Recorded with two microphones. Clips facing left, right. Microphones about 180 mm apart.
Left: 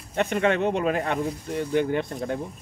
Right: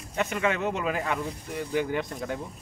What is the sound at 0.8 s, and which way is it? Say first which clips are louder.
Speech: left 4 dB; 35° left (ahead or behind).